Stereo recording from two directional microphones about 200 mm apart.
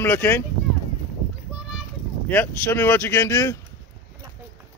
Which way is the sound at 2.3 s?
10° left (ahead or behind).